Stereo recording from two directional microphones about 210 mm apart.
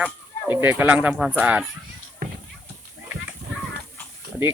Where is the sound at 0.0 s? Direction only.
10° right (ahead or behind).